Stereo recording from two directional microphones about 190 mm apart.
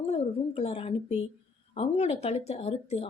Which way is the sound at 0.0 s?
30° left (ahead or behind).